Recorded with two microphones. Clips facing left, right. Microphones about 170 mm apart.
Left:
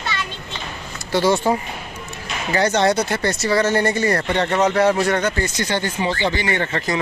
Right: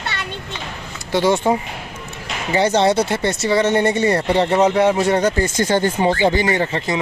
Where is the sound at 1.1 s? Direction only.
20° right (ahead or behind).